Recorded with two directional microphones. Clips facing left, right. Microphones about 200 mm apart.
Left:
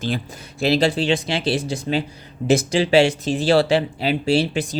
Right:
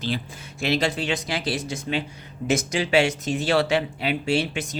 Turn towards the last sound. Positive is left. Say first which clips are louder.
# left 5 dB
turn(degrees=35)  # may be behind; listen again after turning